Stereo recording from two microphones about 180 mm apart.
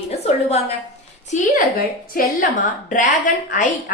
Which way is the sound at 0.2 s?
35° left (ahead or behind).